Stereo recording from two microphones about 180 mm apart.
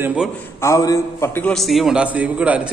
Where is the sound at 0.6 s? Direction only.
20° left (ahead or behind).